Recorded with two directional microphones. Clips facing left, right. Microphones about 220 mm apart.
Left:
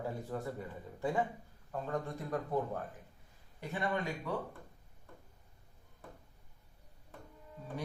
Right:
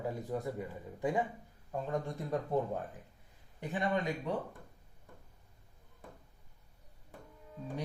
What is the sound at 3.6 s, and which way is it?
Speech, 15° right (ahead or behind).